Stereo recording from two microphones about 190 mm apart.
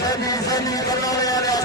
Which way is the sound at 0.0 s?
20° left (ahead or behind).